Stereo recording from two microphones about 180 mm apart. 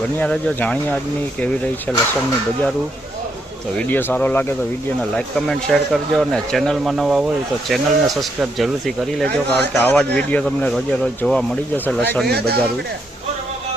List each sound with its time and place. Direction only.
0.2 s speech: 5° left (ahead or behind)
3.8 s speech: 10° left (ahead or behind)
12.2 s speech: 60° right (ahead or behind)